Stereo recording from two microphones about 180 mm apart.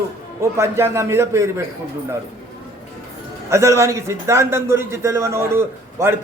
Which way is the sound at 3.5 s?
15° right (ahead or behind).